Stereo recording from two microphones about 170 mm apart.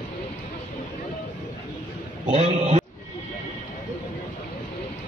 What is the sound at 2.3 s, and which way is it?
Speech, 40° right (ahead or behind).